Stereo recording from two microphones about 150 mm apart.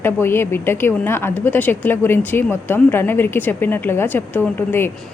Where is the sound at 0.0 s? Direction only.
15° left (ahead or behind).